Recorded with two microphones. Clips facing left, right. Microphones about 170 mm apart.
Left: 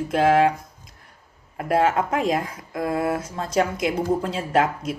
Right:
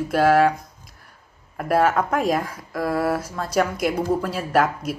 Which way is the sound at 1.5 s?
20° left (ahead or behind).